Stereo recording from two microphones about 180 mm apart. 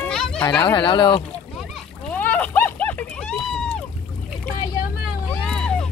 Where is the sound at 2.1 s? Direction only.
10° left (ahead or behind).